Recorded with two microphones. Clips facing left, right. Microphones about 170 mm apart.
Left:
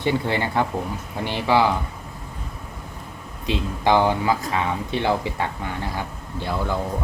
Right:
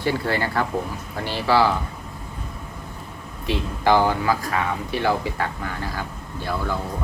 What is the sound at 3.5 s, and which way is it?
Speech, 20° left (ahead or behind).